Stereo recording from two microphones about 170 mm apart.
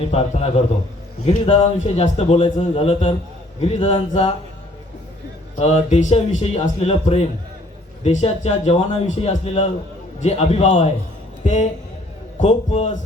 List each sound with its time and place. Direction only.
0.0 s speech: 35° left (ahead or behind)
5.5 s a man's voice: 45° left (ahead or behind)